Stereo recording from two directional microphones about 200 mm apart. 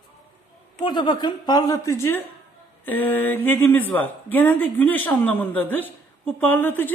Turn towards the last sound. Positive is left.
turn(degrees=10)  # may be behind; listen again after turning